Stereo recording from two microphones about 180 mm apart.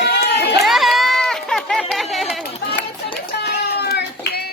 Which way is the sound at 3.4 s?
65° left (ahead or behind).